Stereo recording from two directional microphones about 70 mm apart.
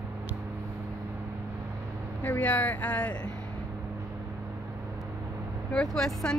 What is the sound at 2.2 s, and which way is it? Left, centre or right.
Speech, left.